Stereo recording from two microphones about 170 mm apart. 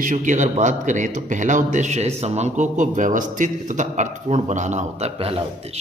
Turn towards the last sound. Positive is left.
turn(degrees=-35)  # may be behind; listen again after turning